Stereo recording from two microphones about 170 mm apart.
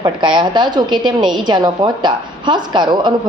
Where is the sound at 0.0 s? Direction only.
25° right (ahead or behind).